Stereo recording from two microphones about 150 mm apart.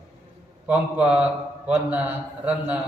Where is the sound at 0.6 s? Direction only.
10° right (ahead or behind).